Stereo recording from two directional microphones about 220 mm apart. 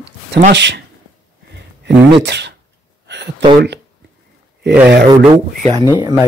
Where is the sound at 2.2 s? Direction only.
50° right (ahead or behind).